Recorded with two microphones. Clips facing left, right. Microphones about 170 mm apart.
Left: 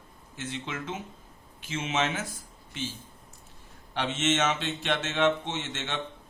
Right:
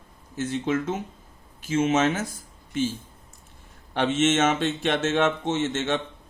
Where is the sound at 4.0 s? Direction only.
50° right (ahead or behind).